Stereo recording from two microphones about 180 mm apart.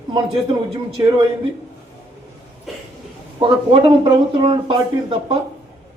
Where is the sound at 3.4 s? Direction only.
25° right (ahead or behind).